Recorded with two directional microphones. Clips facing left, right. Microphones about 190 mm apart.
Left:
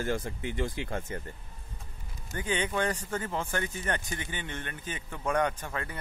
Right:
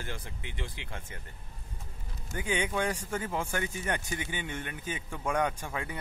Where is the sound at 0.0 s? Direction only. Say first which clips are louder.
Left 10 dB; 45° left (ahead or behind).